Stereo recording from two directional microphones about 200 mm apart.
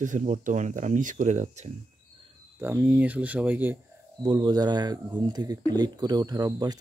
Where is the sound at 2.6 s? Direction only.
10° right (ahead or behind).